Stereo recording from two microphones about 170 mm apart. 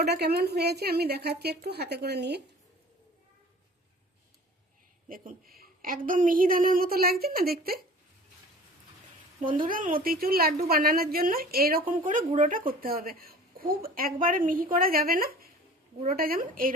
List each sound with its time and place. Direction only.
0.0 s a woman's voice: 70° right (ahead or behind)
5.0 s a woman's voice: 55° right (ahead or behind)
9.4 s a woman's voice: 30° right (ahead or behind)
9.6 s a woman's voice: 55° right (ahead or behind)